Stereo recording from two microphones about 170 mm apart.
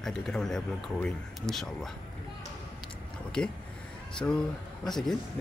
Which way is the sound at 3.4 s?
5° left (ahead or behind).